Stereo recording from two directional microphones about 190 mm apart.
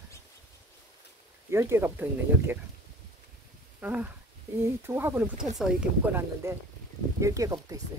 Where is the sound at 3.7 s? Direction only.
10° right (ahead or behind).